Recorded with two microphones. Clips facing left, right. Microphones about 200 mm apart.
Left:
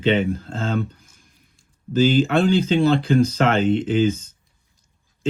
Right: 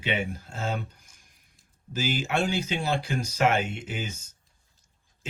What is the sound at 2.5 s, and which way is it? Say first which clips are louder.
Speech: left 11 dB; 10° right (ahead or behind).